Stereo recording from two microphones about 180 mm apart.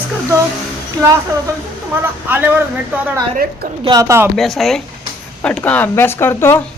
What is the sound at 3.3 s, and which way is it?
Speech, 55° right (ahead or behind).